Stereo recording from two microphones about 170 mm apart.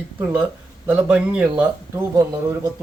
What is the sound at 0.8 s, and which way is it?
Speech, 5° right (ahead or behind).